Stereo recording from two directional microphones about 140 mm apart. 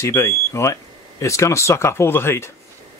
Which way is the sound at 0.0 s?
20° left (ahead or behind).